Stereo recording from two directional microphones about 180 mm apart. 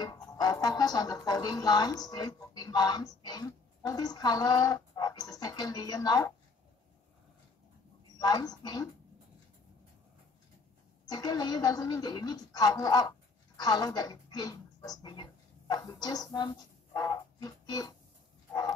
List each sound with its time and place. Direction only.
0.0 s speech: 20° left (ahead or behind)
8.2 s speech: 20° left (ahead or behind)
11.1 s speech: 20° left (ahead or behind)